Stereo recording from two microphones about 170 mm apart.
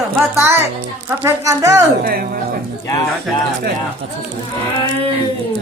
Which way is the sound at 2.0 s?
60° right (ahead or behind).